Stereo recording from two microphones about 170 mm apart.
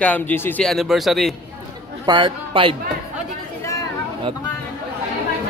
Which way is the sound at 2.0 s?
30° right (ahead or behind).